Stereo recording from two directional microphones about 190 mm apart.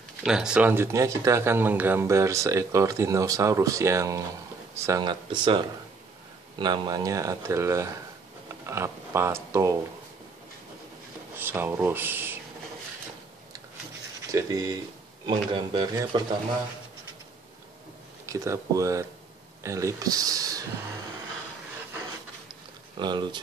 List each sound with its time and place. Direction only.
0.2 s speech: 5° right (ahead or behind); by 5.6 s 25° right (ahead or behind)
6.6 s speech: 20° right (ahead or behind)
11.3 s speech: 10° right (ahead or behind)
14.3 s speech: 20° right (ahead or behind)
18.2 s speech: 15° right (ahead or behind)
22.9 s speech: 25° right (ahead or behind)